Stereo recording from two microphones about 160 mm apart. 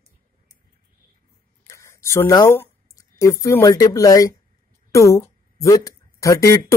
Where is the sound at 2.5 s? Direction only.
20° left (ahead or behind).